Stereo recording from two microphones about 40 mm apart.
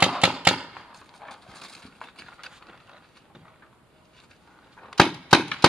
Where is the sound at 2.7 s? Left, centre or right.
Centre.